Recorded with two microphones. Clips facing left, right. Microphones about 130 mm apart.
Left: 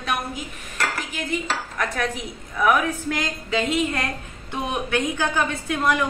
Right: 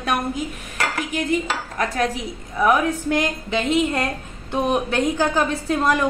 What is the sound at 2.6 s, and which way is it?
A woman's voice, 30° right (ahead or behind).